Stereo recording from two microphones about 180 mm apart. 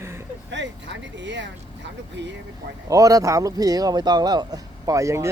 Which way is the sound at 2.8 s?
20° right (ahead or behind).